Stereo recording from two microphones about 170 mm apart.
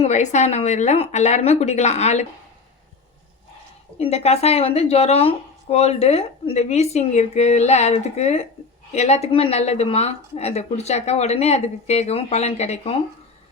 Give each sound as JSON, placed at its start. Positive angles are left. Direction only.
{"t": 0.0, "sound": "speech", "side_deg": 45}
{"t": 3.9, "sound": "speech", "side_deg": 40}